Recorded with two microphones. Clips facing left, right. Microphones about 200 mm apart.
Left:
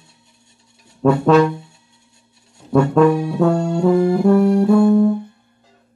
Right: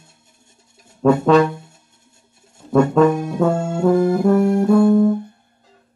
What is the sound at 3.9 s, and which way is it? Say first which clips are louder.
Music: even; 45° right (ahead or behind).